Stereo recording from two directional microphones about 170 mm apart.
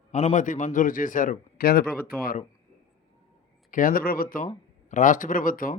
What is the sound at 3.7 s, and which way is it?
A man's voice, 55° left (ahead or behind).